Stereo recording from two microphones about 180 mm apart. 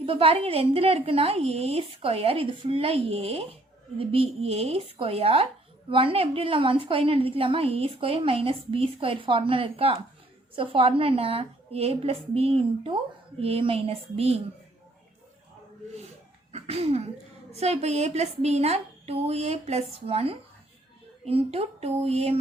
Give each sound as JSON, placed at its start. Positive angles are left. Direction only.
{"t": 0.0, "sound": "a woman's voice", "side_deg": -30}
{"t": 16.5, "sound": "a sound", "side_deg": -35}
{"t": 17.5, "sound": "a woman's voice", "side_deg": -35}